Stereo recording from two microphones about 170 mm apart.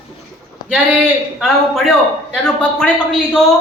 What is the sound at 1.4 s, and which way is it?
A man's voice, centre (ahead or behind).